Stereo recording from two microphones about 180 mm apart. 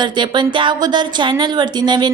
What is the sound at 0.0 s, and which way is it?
A woman's voice, 25° right (ahead or behind).